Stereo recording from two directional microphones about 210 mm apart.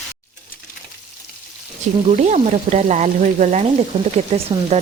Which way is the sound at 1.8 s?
35° right (ahead or behind).